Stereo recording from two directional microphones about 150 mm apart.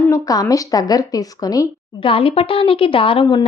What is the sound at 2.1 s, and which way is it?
A woman's voice, 35° left (ahead or behind).